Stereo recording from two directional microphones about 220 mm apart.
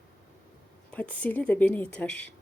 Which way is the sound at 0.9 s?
5° left (ahead or behind).